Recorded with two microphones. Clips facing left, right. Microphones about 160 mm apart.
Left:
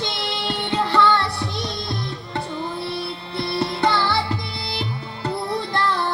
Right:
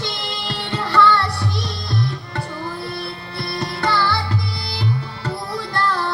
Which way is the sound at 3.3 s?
20° left (ahead or behind).